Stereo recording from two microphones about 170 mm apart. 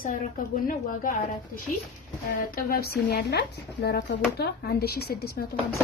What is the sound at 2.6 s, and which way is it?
A woman's voice, 60° left (ahead or behind).